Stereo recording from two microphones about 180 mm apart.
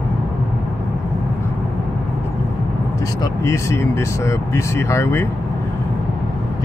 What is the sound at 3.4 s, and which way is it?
Speech, 15° left (ahead or behind).